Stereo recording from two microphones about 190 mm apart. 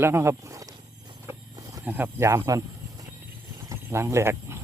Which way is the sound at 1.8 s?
10° right (ahead or behind).